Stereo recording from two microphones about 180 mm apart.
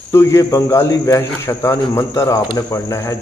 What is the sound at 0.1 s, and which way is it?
Cricket, 15° left (ahead or behind).